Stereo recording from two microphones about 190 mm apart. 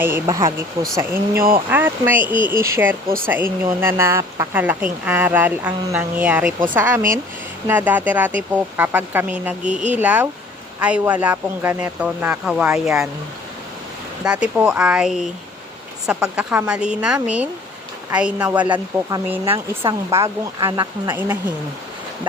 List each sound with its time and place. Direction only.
0.0 s speech: 15° right (ahead or behind)
2.2 s speech: 25° left (ahead or behind)
2.6 s speech: 15° right (ahead or behind)
14.3 s speech: 5° right (ahead or behind)